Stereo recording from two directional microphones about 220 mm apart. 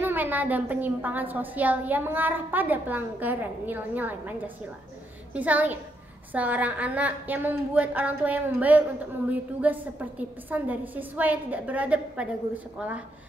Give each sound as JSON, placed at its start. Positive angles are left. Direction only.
{"t": 0.0, "sound": "a woman's voice", "side_deg": -10}
{"t": 5.3, "sound": "a woman's voice", "side_deg": -5}